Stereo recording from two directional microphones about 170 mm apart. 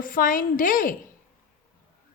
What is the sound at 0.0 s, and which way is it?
Speech, 55° left (ahead or behind).